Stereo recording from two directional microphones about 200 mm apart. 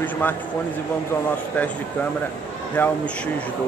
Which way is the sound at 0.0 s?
10° left (ahead or behind).